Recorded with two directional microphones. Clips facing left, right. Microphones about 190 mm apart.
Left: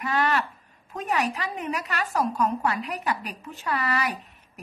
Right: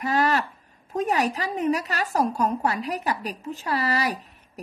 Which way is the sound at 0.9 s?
40° right (ahead or behind).